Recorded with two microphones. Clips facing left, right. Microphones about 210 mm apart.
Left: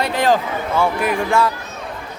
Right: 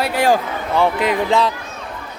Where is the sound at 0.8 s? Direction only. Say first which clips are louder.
Right 2 dB; 20° right (ahead or behind).